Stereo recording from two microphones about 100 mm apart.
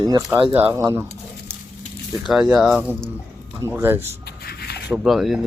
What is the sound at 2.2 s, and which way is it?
Speech, 5° right (ahead or behind).